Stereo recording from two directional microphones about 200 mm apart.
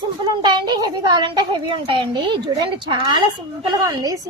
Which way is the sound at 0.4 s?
20° right (ahead or behind).